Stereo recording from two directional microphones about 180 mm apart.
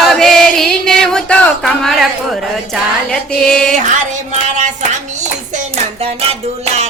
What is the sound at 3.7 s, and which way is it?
Music, 40° right (ahead or behind).